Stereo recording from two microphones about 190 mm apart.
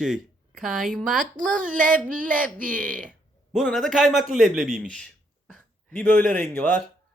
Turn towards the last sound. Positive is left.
turn(degrees=10)  # may be behind; listen again after turning